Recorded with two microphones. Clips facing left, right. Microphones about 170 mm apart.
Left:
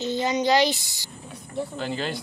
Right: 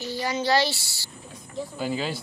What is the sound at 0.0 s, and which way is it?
A child's voice, 20° left (ahead or behind).